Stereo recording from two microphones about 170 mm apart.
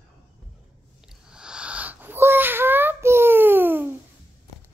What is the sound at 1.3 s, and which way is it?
Child singing, 5° right (ahead or behind).